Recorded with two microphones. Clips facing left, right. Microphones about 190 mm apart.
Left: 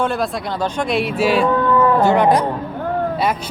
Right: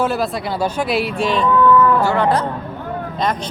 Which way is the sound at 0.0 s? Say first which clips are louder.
Right 1 dB; 5° right (ahead or behind).